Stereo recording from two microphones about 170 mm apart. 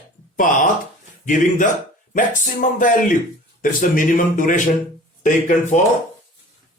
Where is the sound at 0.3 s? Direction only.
50° left (ahead or behind).